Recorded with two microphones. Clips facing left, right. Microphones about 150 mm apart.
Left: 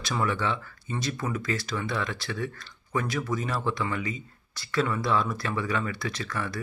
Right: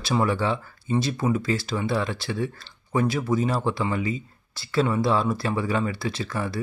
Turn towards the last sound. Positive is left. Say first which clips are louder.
# right 4 dB
turn(degrees=-30)  # may be behind; listen again after turning